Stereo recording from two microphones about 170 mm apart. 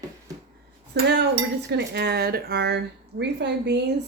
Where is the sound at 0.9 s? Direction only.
85° right.